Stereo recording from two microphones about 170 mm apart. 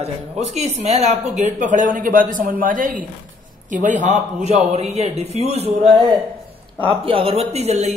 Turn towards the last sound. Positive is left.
turn(degrees=-40)  # may be behind; listen again after turning